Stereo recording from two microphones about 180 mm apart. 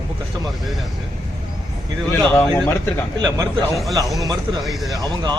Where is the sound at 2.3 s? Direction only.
10° left (ahead or behind).